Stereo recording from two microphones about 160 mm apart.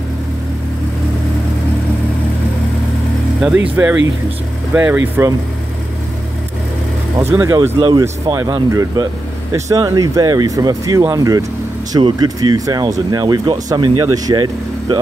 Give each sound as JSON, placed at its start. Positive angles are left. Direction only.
{"t": 3.7, "sound": "speech", "side_deg": -10}
{"t": 7.2, "sound": "speech", "side_deg": -15}